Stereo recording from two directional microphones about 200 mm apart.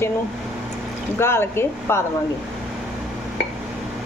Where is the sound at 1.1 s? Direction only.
10° left (ahead or behind).